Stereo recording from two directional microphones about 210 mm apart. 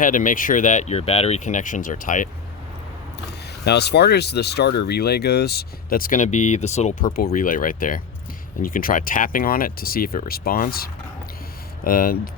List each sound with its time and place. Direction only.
0.0 s speech: 40° left (ahead or behind)
3.7 s speech: 50° left (ahead or behind)
11.9 s speech: 45° left (ahead or behind)